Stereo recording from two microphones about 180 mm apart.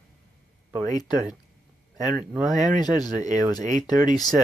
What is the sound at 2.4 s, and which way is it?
Speech, 40° right (ahead or behind).